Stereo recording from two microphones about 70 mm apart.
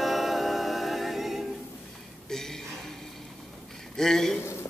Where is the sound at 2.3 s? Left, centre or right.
Centre.